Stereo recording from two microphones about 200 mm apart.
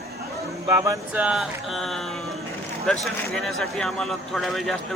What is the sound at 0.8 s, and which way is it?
Speech, 15° right (ahead or behind).